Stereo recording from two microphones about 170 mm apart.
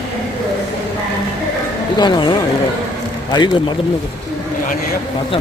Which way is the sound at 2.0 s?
25° left (ahead or behind).